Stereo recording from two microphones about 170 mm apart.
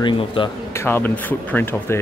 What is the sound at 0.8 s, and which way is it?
Speech, 10° left (ahead or behind).